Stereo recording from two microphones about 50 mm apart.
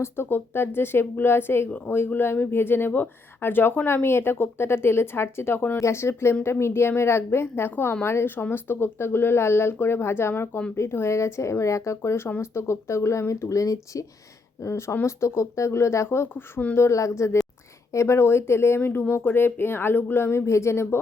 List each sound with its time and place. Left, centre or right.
0.3 s speech: left
16.0 s speech: left
16.3 s speech: left
16.7 s a woman's voice: left
17.9 s speech: left
18.8 s speech: left
20.5 s speech: left